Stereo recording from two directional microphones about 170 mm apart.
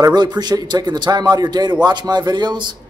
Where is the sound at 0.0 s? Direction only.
25° right (ahead or behind).